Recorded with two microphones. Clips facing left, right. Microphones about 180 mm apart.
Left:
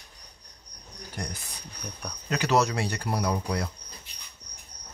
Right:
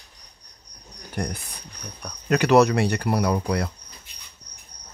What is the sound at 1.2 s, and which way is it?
Speech, 60° right (ahead or behind).